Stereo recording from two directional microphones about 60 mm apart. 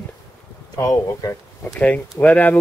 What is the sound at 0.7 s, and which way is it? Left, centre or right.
Speech, left.